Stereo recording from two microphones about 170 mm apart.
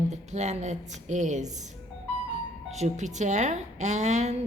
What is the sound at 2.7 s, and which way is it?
A woman's voice, 45° right (ahead or behind).